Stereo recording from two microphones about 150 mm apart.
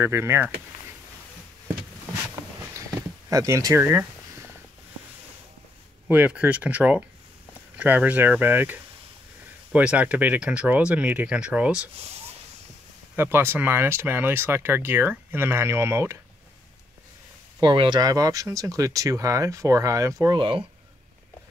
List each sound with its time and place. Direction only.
0.0 s speech: 15° right (ahead or behind)
3.3 s speech: 20° right (ahead or behind)
6.0 s speech: 10° right (ahead or behind)
13.1 s speech: 15° right (ahead or behind)
17.6 s speech: 30° right (ahead or behind)
20.3 s speech: 35° right (ahead or behind)